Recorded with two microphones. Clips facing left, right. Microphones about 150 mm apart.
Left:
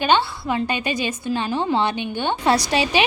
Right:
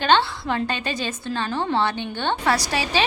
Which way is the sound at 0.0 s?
10° left (ahead or behind).